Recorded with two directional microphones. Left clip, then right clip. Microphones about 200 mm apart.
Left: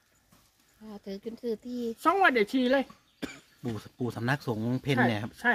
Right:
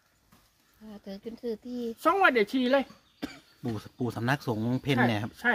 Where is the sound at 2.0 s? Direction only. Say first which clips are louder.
Right 1 dB; 5° left (ahead or behind).